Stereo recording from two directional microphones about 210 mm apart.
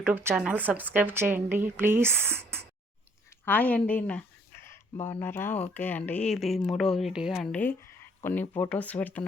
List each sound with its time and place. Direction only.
0.0 s speech: 10° right (ahead or behind)
3.4 s speech: 5° left (ahead or behind)